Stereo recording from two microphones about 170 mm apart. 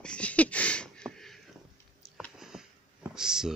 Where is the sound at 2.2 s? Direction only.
Centre (ahead or behind).